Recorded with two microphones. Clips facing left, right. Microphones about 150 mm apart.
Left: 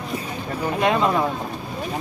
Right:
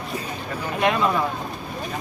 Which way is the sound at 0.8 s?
25° left (ahead or behind).